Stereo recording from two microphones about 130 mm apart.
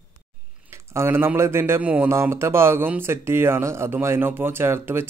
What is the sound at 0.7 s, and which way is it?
Speech, 20° right (ahead or behind).